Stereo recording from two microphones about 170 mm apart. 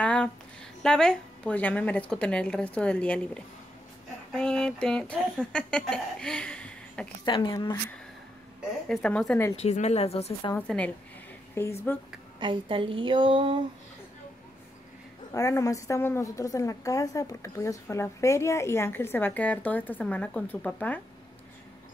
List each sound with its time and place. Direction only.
0.0 s a sound: 5° left (ahead or behind)
0.8 s a woman's voice: 5° left (ahead or behind)
7.2 s speech: 25° left (ahead or behind)
8.8 s speech: 5° left (ahead or behind)
9.6 s a woman's voice: 40° left (ahead or behind)
10.5 s a woman's voice: 5° left (ahead or behind)
12.4 s a woman's voice: 30° right (ahead or behind)
15.3 s a woman's voice: 20° left (ahead or behind)